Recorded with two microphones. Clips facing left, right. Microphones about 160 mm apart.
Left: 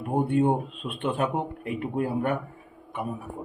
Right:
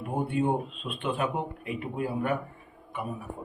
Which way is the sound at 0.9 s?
55° left (ahead or behind).